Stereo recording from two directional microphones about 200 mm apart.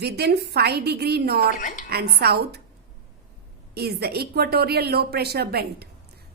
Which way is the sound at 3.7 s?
55° right (ahead or behind).